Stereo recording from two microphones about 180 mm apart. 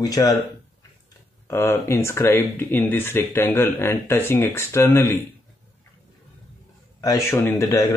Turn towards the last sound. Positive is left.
turn(degrees=15)  # may be behind; listen again after turning